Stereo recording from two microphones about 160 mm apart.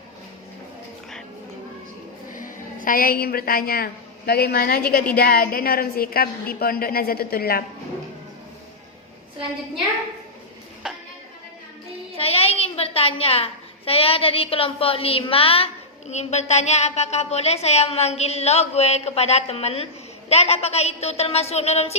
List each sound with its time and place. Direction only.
2.3 s a woman's voice: 60° left (ahead or behind)
4.3 s a woman's voice: 80° left
10.8 s a sound: 5° right (ahead or behind)
12.1 s a woman's voice: 40° left (ahead or behind)